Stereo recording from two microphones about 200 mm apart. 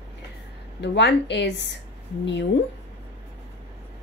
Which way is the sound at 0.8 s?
60° left (ahead or behind).